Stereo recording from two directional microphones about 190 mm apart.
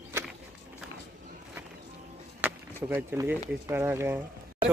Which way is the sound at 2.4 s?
10° right (ahead or behind).